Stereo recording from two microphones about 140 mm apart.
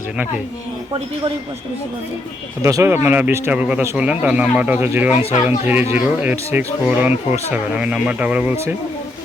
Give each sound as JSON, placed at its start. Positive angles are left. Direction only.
{"t": 2.6, "sound": "speech", "side_deg": -25}